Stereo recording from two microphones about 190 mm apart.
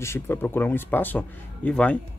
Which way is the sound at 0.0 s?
10° left (ahead or behind).